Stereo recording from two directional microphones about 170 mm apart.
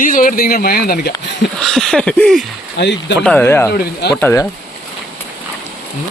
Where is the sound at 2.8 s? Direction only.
90° left.